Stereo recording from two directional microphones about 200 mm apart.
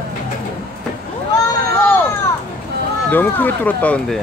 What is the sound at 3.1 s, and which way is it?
Speech, 10° left (ahead or behind).